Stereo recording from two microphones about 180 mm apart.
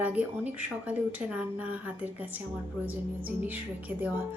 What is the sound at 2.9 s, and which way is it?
Speech, 10° right (ahead or behind).